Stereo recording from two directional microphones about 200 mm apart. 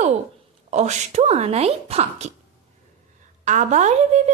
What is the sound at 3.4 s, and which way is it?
Speech, 35° right (ahead or behind).